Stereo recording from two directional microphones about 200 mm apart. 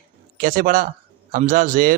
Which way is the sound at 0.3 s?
40° right (ahead or behind).